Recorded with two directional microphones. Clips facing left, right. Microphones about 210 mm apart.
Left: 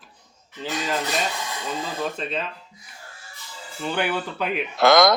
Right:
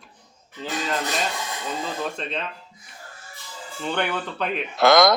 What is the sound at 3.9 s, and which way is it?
Speech, 5° left (ahead or behind).